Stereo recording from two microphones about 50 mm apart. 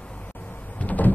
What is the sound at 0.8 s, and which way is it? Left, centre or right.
Power windows, left.